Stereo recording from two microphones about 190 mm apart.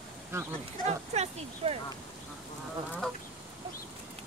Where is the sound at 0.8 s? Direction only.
35° right (ahead or behind).